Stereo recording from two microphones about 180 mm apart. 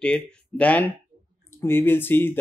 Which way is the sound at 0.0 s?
5° left (ahead or behind).